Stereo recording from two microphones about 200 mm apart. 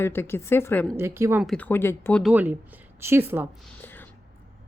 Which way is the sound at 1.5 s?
5° left (ahead or behind).